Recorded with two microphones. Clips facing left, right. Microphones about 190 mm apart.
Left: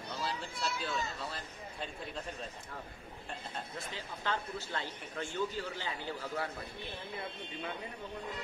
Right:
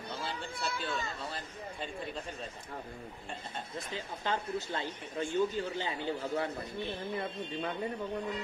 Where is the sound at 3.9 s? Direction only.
15° right (ahead or behind).